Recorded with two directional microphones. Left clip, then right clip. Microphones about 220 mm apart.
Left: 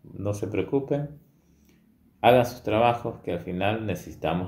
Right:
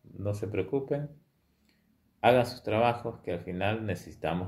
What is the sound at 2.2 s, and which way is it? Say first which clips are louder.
Speech: left 5 dB; 5° right (ahead or behind).